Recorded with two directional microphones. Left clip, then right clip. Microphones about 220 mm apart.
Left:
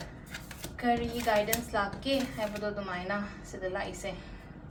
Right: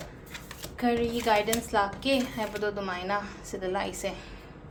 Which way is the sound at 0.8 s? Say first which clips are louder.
Right 3 dB; 50° right (ahead or behind).